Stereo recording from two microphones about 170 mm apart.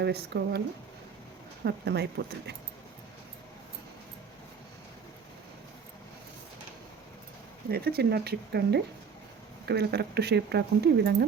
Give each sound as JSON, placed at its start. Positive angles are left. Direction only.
{"t": 0.0, "sound": "speech", "side_deg": -75}
{"t": 1.6, "sound": "speech", "side_deg": -75}
{"t": 7.7, "sound": "speech", "side_deg": -65}